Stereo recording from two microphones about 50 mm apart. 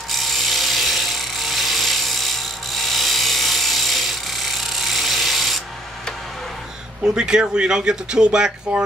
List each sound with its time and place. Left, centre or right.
0.1 s ratchet: centre
2.9 s wood: centre
7.0 s speech: centre